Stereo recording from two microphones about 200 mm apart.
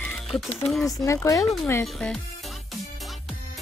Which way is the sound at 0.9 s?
15° left (ahead or behind).